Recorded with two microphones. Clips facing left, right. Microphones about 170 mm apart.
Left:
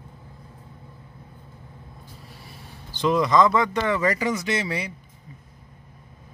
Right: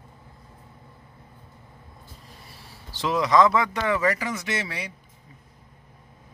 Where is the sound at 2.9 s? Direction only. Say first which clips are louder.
Left 1 dB; centre (ahead or behind).